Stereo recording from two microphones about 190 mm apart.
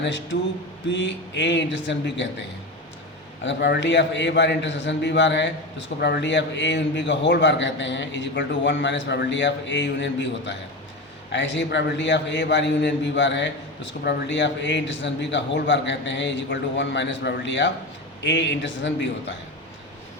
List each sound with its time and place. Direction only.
0.0 s a man's voice: 70° left (ahead or behind)
3.4 s a man's voice: 70° left (ahead or behind)